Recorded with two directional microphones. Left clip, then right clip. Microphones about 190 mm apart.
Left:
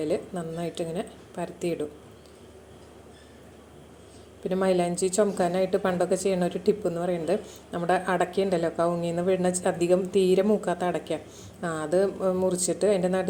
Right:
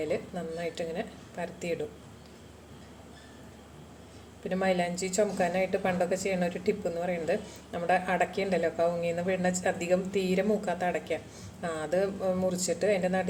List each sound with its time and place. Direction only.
0.6 s a woman's voice: 35° left (ahead or behind)
4.4 s a woman's voice: 30° left (ahead or behind)